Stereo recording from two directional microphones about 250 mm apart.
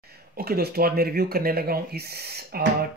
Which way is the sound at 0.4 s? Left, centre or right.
Right.